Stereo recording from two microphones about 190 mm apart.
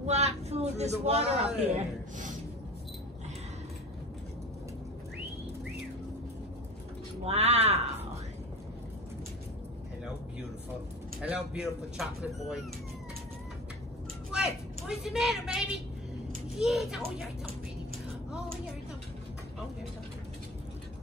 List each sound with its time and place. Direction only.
0.0 s speech: 35° right (ahead or behind)
7.2 s speech: 35° right (ahead or behind)
11.1 s speech: 5° right (ahead or behind)
14.3 s a woman's voice: 5° right (ahead or behind)